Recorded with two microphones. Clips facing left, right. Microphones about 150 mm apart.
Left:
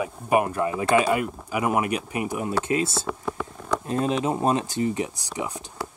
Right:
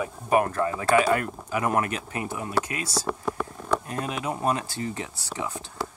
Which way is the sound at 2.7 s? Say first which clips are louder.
Left 5 dB; 25° left (ahead or behind).